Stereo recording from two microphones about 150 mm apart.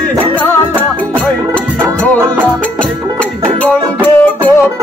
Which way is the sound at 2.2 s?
20° right (ahead or behind).